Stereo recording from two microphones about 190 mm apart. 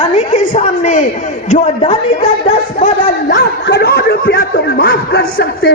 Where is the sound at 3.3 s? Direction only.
65° left (ahead or behind).